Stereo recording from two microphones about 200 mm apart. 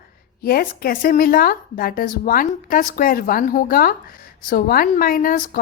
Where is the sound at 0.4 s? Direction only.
45° left (ahead or behind).